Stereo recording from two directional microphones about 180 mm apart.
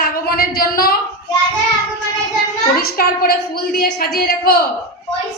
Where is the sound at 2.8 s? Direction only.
60° left (ahead or behind).